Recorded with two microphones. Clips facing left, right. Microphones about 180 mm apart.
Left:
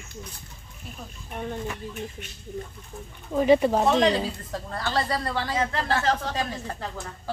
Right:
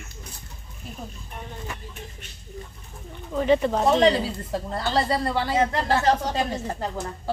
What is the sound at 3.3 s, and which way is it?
Speech, 10° left (ahead or behind).